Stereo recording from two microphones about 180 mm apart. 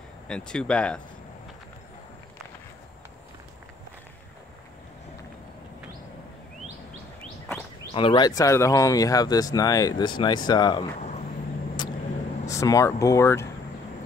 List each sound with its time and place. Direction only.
0.3 s speech: 5° left (ahead or behind)
7.9 s speech: 30° left (ahead or behind)
11.0 s vehicle: 40° left (ahead or behind)
12.4 s speech: 15° left (ahead or behind)